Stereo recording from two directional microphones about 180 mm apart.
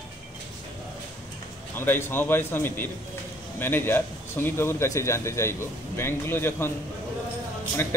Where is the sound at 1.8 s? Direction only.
10° left (ahead or behind).